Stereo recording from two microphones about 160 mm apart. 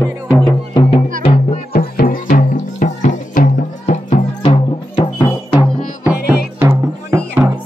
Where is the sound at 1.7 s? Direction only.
65° left (ahead or behind); by 4.5 s 45° left (ahead or behind).